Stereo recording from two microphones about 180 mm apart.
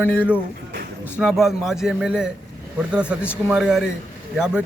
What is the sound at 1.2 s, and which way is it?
A man's voice, centre (ahead or behind).